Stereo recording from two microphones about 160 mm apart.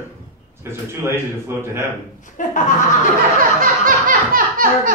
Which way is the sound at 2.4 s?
55° left (ahead or behind).